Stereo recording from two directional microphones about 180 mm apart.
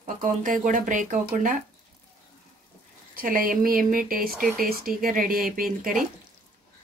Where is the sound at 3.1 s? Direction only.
50° right (ahead or behind).